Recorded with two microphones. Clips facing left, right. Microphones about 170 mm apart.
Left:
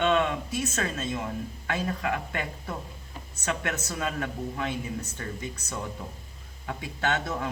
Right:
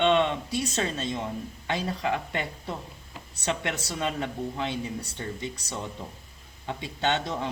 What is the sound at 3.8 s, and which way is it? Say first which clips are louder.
Speech: right 1 dB; 25° right (ahead or behind).